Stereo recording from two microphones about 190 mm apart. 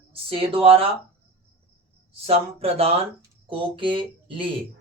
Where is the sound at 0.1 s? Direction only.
30° right (ahead or behind).